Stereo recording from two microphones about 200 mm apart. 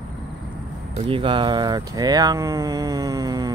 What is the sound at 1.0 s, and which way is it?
Speech, 25° right (ahead or behind).